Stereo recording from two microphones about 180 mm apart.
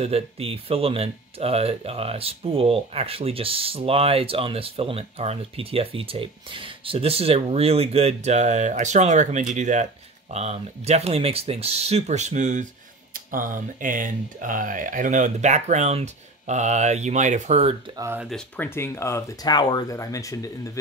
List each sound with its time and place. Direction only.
0.0 s speech: 35° right (ahead or behind)
17.9 s speech: 15° right (ahead or behind)
18.6 s speech: 15° left (ahead or behind)